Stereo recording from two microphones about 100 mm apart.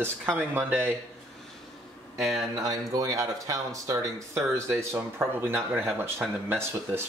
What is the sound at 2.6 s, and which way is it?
Speech, 35° right (ahead or behind).